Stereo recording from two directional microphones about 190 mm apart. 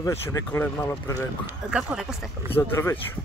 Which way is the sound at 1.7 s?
5° right (ahead or behind).